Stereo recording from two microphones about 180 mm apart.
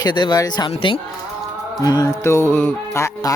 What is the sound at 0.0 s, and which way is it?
Speech, 25° left (ahead or behind).